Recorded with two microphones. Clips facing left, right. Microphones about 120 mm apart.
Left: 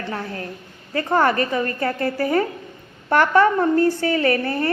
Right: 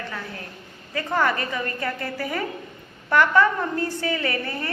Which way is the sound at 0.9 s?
40° left (ahead or behind).